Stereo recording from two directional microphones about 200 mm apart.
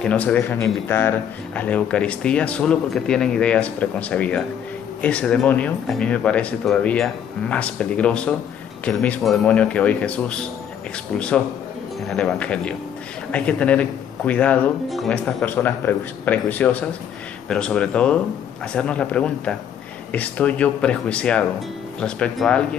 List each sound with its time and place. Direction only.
0.0 s a man's voice: 5° left (ahead or behind)